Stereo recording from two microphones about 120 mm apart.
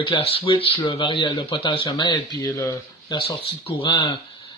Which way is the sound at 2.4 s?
30° left (ahead or behind).